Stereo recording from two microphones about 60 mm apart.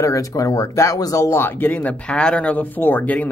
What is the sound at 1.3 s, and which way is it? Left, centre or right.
Speech, left.